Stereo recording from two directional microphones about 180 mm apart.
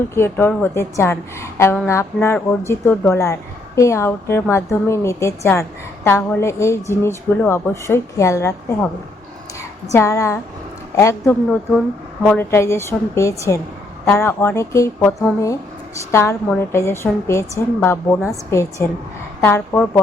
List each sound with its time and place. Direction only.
0.1 s a woman's voice: 15° left (ahead or behind)